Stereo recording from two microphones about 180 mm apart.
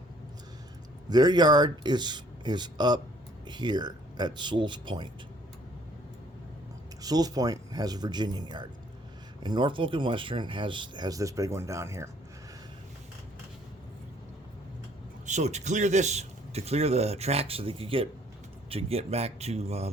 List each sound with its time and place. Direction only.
1.1 s speech: 25° right (ahead or behind)
7.0 s speech: 20° right (ahead or behind)
15.3 s a man's voice: 40° right (ahead or behind)